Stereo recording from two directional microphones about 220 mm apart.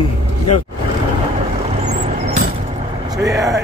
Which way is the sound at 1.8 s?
30° right (ahead or behind).